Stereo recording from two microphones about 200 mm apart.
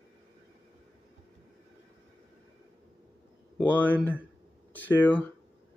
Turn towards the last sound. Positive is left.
turn(degrees=10)  # may be behind; listen again after turning